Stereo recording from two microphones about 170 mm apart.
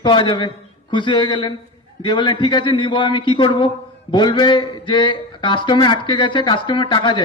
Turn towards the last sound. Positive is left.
turn(degrees=30)  # may be behind; listen again after turning